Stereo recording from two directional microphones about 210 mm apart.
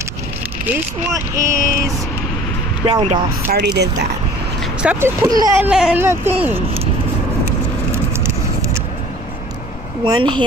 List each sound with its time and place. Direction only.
1.3 s speech: 15° right (ahead or behind)
2.8 s speech: 25° right (ahead or behind)
3.5 s speech: 55° right (ahead or behind)
4.8 s speech: 10° right (ahead or behind)
7.4 s a sound: 15° right (ahead or behind)
10.0 s speech: 20° right (ahead or behind)